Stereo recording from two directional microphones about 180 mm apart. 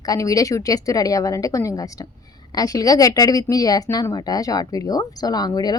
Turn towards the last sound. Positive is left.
turn(degrees=20)  # may be behind; listen again after turning